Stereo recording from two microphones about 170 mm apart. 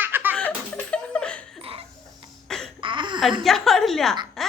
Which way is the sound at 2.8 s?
30° right (ahead or behind).